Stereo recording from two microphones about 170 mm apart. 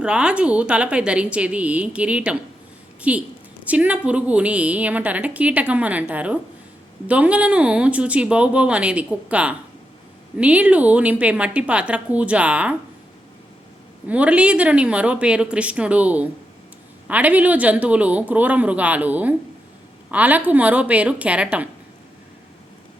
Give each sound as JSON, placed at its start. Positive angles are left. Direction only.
{"t": 0.0, "sound": "a woman's voice", "side_deg": -5}
{"t": 14.1, "sound": "a woman's voice", "side_deg": -10}